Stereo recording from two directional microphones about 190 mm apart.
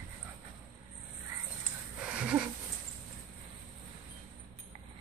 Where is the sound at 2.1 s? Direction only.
5° right (ahead or behind).